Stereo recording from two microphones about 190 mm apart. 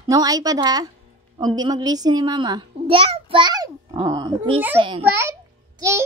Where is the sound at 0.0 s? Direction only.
20° right (ahead or behind).